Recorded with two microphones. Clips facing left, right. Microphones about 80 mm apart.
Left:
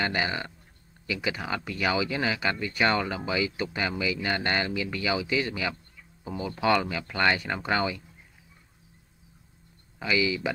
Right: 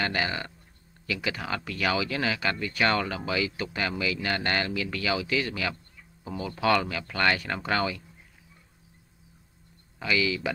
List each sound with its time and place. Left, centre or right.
0.0 s speech: centre
9.9 s speech: centre